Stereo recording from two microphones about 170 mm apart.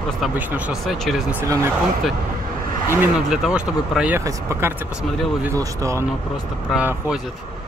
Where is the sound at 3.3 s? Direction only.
5° right (ahead or behind).